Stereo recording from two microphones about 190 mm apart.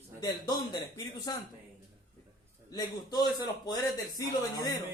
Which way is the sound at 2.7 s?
20° left (ahead or behind).